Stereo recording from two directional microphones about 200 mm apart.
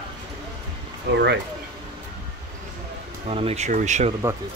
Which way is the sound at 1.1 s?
60° right (ahead or behind).